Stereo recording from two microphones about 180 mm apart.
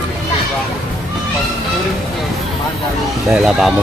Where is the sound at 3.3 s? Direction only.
Centre (ahead or behind).